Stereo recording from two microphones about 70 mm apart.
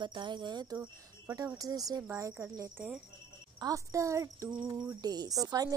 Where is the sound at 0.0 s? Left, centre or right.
Right.